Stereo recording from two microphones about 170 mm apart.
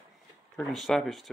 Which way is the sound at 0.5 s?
Centre (ahead or behind).